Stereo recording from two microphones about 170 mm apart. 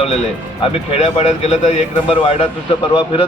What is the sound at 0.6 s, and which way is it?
A man's voice, 35° left (ahead or behind).